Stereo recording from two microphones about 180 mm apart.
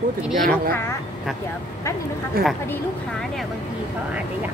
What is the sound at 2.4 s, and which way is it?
Speech, 55° right (ahead or behind).